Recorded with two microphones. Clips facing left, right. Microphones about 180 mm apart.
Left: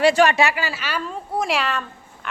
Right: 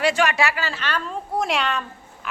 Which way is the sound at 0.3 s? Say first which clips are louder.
Left 3 dB; 20° left (ahead or behind).